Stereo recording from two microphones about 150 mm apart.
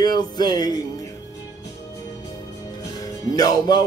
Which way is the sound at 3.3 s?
25° left (ahead or behind).